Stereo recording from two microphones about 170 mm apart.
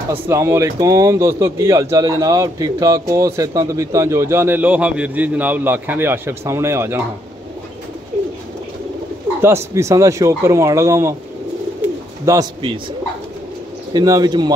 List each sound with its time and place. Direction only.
0.1 s speech: 15° right (ahead or behind)
9.4 s speech: 15° right (ahead or behind)
12.3 s speech: 15° right (ahead or behind)
13.9 s speech: 20° right (ahead or behind)